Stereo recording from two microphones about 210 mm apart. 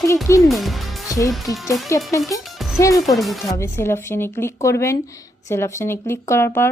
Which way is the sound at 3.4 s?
15° left (ahead or behind).